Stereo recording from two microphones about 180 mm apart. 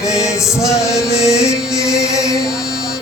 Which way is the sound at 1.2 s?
15° left (ahead or behind).